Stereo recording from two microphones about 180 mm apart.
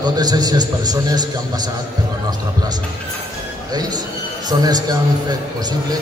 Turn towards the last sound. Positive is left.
turn(degrees=-20)  # may be behind; listen again after turning